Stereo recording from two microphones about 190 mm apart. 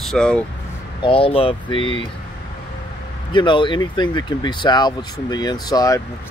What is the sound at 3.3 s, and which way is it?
Speech, 25° left (ahead or behind).